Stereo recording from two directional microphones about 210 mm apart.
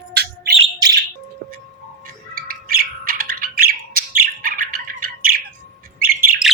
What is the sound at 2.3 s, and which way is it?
Bird, 45° right (ahead or behind).